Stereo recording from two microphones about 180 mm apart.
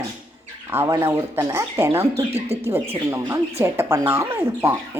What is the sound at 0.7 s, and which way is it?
Speech, 15° right (ahead or behind).